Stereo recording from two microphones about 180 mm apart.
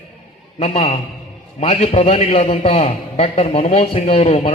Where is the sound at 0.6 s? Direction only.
35° left (ahead or behind).